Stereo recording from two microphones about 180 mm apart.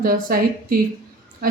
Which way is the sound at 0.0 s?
55° right (ahead or behind).